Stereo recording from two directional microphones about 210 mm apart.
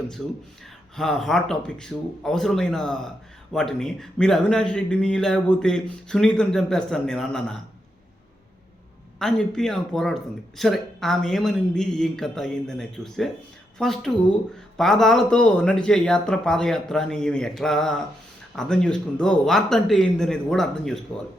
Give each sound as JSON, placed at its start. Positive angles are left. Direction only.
{"t": 0.2, "sound": "a man's voice", "side_deg": 0}
{"t": 9.1, "sound": "a man's voice", "side_deg": 5}